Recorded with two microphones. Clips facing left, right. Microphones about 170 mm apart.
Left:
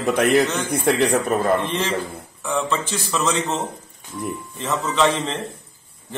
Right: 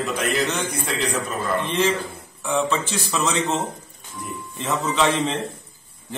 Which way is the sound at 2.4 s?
Centre (ahead or behind).